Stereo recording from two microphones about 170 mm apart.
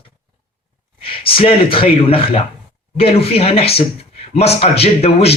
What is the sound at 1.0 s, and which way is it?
A man's voice, 35° left (ahead or behind).